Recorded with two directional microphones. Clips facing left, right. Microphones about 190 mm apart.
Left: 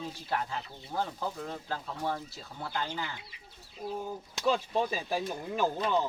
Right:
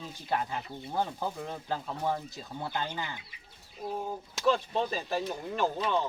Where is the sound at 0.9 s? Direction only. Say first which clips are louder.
Right 1 dB; 15° right (ahead or behind).